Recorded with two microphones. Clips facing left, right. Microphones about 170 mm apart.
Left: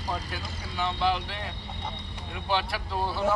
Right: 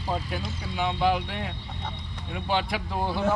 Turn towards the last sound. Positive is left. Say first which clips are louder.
# right 2 dB
turn(degrees=-15)  # may be behind; listen again after turning